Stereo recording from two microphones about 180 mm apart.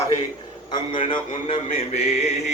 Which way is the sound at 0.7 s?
30° left (ahead or behind).